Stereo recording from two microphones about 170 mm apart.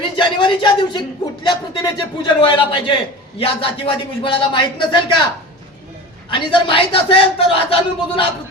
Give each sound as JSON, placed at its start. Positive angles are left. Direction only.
{"t": 0.2, "sound": "a man's voice", "side_deg": 25}
{"t": 6.3, "sound": "speech", "side_deg": 30}